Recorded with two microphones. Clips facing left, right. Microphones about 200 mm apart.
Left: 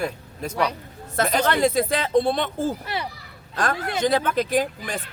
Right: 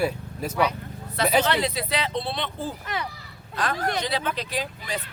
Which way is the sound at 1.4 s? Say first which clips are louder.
Left 5 dB; 45° left (ahead or behind).